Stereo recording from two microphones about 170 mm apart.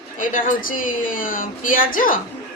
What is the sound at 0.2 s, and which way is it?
A woman's voice, 55° left (ahead or behind).